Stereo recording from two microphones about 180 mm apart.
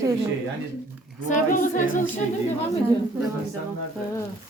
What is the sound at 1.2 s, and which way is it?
Speech, 45° left (ahead or behind).